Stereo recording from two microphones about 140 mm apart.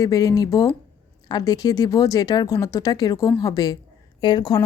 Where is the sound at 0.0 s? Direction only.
25° left (ahead or behind).